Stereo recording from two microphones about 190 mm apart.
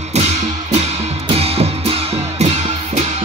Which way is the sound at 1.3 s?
30° right (ahead or behind).